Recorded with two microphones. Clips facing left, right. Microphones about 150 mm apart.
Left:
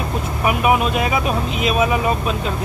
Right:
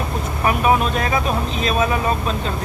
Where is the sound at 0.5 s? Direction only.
10° left (ahead or behind).